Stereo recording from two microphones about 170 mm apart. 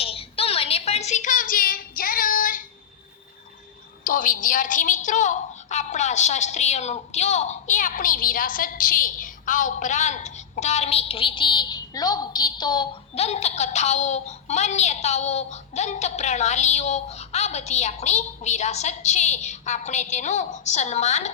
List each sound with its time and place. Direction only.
0.0 s a sound: 35° left (ahead or behind); by 2.6 s 55° left (ahead or behind)
4.0 s a woman's voice: 55° left (ahead or behind); by 12.9 s 25° left (ahead or behind)
13.1 s a woman's voice: 40° left (ahead or behind)